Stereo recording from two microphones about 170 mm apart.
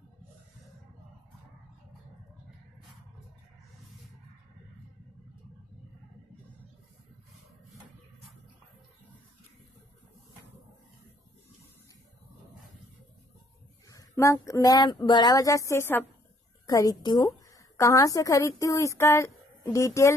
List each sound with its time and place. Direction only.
13.8 s a woman's voice: 20° left (ahead or behind)